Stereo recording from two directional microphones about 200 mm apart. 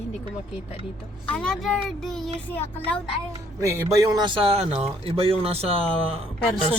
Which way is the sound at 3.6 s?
15° right (ahead or behind).